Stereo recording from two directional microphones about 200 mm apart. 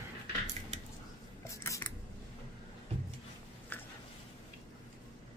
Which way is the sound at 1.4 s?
15° left (ahead or behind).